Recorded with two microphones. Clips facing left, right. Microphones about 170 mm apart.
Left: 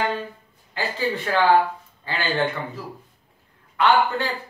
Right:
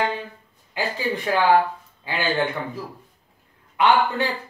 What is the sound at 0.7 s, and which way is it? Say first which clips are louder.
A man's voice: even; 10° right (ahead or behind).